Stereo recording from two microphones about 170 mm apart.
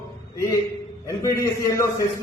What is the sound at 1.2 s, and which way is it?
Speech, 20° left (ahead or behind).